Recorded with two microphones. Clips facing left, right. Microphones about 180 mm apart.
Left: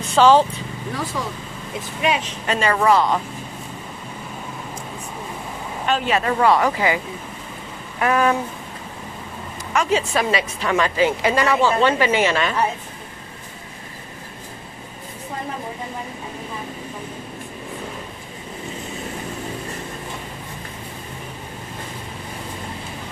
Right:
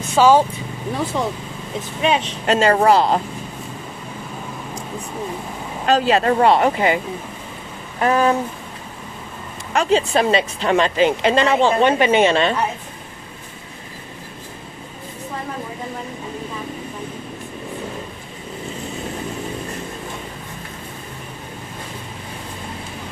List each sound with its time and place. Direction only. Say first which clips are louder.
0.1 s speech: even; 10° right (ahead or behind)
2.0 s speech: right 3 dB; 30° right (ahead or behind)
5.9 s speech: right 5 dB; 35° right (ahead or behind)
8.0 s speech: right 2 dB; 30° right (ahead or behind)
9.7 s speech: right 3 dB; 30° right (ahead or behind)